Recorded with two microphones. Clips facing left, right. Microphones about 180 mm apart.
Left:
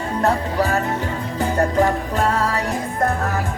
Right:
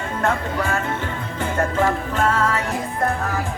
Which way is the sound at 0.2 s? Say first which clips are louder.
Left 3 dB; 35° left (ahead or behind).